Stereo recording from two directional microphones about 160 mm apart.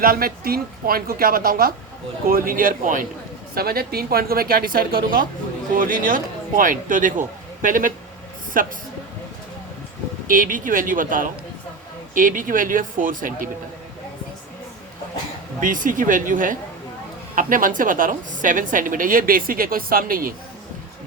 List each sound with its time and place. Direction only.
0.0 s a woman's voice: 65° right (ahead or behind)
3.5 s a woman's voice: 75° right (ahead or behind)
10.2 s a woman's voice: 55° right (ahead or behind)
15.6 s a woman's voice: 55° right (ahead or behind)